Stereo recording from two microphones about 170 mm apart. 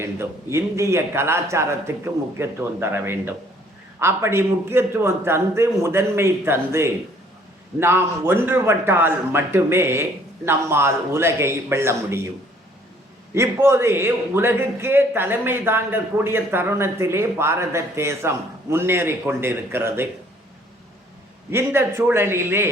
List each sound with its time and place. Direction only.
0.0 s a man's voice: 15° right (ahead or behind)
13.3 s a man's voice: 15° right (ahead or behind)
21.5 s a man's voice: 15° right (ahead or behind)